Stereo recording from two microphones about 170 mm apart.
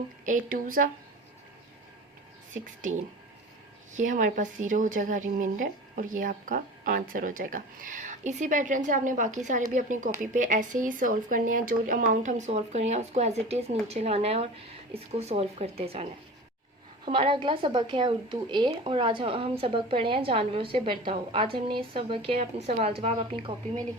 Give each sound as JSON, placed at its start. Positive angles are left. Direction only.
{"t": 0.3, "sound": "speech", "side_deg": -50}
{"t": 2.5, "sound": "speech", "side_deg": -50}
{"t": 17.1, "sound": "speech", "side_deg": -30}